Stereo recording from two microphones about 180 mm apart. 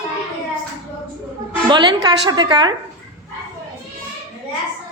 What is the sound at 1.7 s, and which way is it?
A woman's voice, 25° right (ahead or behind).